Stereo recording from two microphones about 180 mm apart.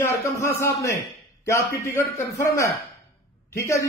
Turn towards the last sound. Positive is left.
turn(degrees=15)  # may be behind; listen again after turning